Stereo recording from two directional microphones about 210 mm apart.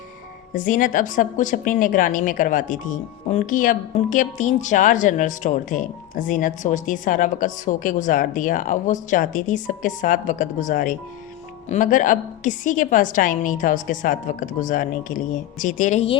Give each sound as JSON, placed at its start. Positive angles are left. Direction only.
{"t": 0.5, "sound": "a woman's voice", "side_deg": 40}